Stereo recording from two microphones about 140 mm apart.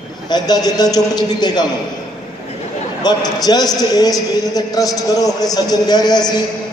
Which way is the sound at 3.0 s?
30° left (ahead or behind).